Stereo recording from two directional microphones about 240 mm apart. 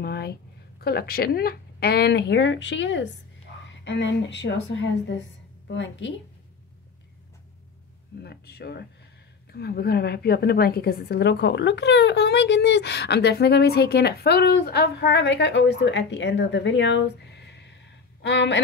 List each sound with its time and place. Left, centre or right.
0.0 s a woman's voice: left
5.7 s a woman's voice: left
8.2 s a woman's voice: left